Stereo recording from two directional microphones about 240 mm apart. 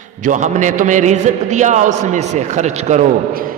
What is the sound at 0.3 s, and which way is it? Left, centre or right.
A man's voice, right.